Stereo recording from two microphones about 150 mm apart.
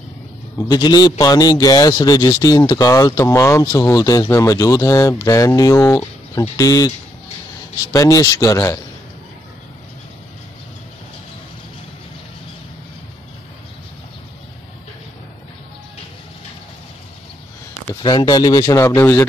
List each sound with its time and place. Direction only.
0.7 s a man's voice: 25° left (ahead or behind)
7.9 s a man's voice: 20° left (ahead or behind)
18.0 s a man's voice: 30° left (ahead or behind)